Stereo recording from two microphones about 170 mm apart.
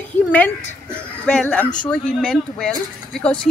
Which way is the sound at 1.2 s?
5° left (ahead or behind).